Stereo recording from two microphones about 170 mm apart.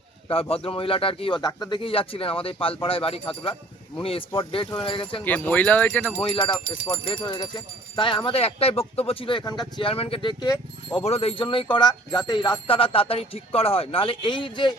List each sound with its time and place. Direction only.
0.3 s speech: 35° left (ahead or behind)
5.2 s speech: 10° left (ahead or behind)
7.0 s speech: 30° left (ahead or behind)
11.0 s speech: 35° left (ahead or behind)